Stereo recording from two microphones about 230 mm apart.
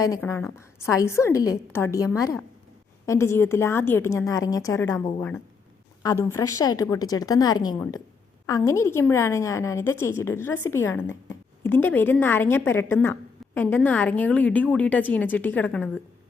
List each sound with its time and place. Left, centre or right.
0.0 s a woman's voice: centre
3.1 s a woman's voice: centre